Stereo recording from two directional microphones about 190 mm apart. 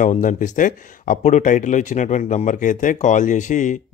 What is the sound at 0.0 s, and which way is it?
Speech, 45° left (ahead or behind).